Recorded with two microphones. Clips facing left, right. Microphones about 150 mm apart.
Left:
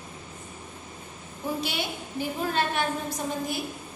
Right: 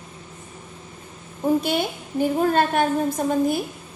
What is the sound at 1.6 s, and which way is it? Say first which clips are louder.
A woman's voice: right 8 dB; 50° right (ahead or behind).